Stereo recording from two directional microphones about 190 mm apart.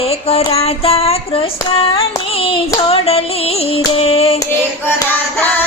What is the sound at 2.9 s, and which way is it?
Music, 30° left (ahead or behind).